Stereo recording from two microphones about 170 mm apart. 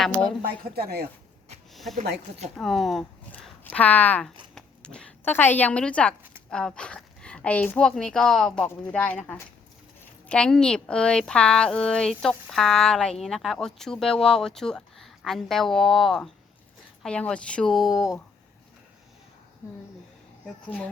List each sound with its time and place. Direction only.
0.0 s speech: centre (ahead or behind)
0.8 s speech: 65° right (ahead or behind)
1.7 s a sound: centre (ahead or behind)
2.6 s a woman's voice: centre (ahead or behind)